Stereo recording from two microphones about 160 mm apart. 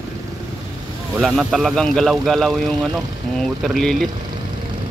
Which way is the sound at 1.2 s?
Centre (ahead or behind).